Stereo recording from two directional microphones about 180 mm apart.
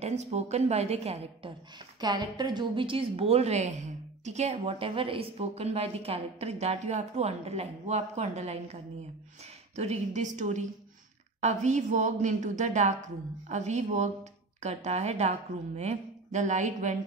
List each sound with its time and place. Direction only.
0.0 s a woman's voice: 35° right (ahead or behind)
2.0 s a woman's voice: 25° right (ahead or behind)
9.8 s a woman's voice: 40° right (ahead or behind)